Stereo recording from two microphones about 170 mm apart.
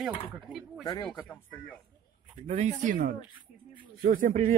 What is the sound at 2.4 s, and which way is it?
Speech, 45° right (ahead or behind).